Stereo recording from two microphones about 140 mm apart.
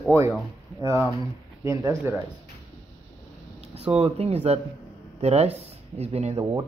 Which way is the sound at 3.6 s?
45° right (ahead or behind).